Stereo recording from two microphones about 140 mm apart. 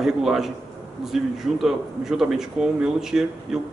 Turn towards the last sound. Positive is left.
turn(degrees=-5)  # may be behind; listen again after turning